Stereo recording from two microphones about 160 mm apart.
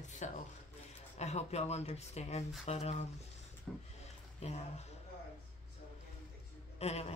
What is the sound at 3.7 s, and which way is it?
Speech, 5° left (ahead or behind).